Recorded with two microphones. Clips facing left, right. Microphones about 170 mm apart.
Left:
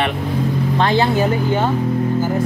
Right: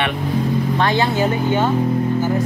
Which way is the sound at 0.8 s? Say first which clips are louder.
Left 3 dB; 30° left (ahead or behind).